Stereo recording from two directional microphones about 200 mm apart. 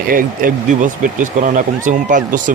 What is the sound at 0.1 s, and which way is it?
Speech, 45° right (ahead or behind).